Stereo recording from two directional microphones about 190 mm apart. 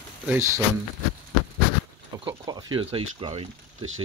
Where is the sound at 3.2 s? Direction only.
30° right (ahead or behind).